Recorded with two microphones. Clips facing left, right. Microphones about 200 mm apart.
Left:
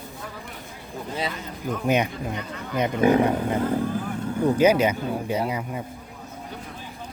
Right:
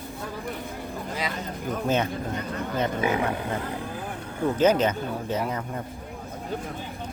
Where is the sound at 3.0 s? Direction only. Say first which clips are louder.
Left 11 dB; 40° left (ahead or behind).